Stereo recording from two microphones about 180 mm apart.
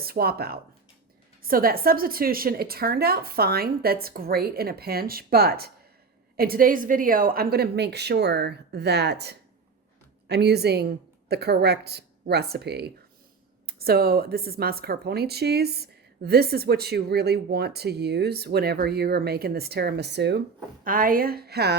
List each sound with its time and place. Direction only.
0.0 s speech: 60° right (ahead or behind)
20.8 s speech: 50° right (ahead or behind)